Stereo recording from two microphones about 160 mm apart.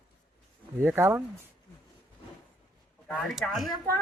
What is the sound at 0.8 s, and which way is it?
Speech, 15° right (ahead or behind).